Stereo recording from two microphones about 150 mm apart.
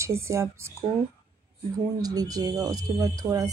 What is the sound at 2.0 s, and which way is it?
Speech, 25° right (ahead or behind).